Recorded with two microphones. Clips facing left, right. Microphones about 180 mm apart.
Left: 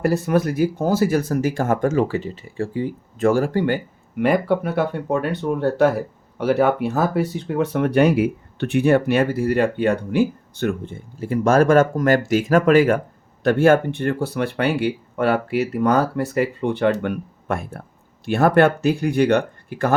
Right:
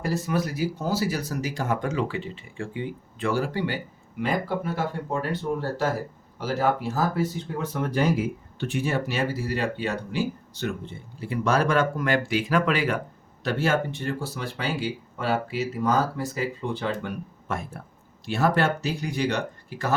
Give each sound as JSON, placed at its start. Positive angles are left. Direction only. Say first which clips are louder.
{"t": 0.0, "sound": "speech", "louder": "left 8 dB", "side_deg": 60}
{"t": 4.2, "sound": "speech", "louder": "left 8 dB", "side_deg": 65}